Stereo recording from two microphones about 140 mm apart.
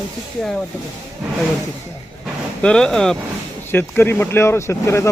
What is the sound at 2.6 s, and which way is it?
Speech, 5° left (ahead or behind).